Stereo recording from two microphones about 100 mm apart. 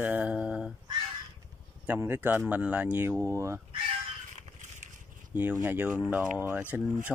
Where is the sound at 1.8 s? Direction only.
20° right (ahead or behind).